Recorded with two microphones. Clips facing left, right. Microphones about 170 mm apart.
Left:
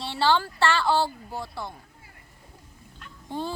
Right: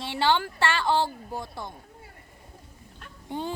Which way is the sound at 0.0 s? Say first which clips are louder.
Left 1 dB; 15° right (ahead or behind).